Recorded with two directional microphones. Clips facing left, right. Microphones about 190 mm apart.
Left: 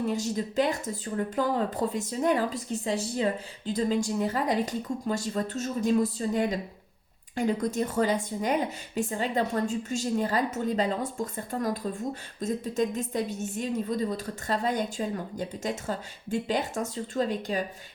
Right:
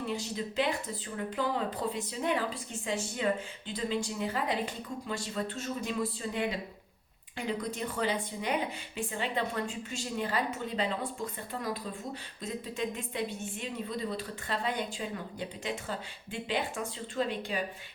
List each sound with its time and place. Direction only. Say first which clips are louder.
0.1 s speech: left 6 dB; 45° left (ahead or behind)